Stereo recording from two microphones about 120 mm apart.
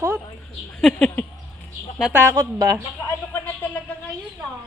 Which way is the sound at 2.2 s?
20° right (ahead or behind).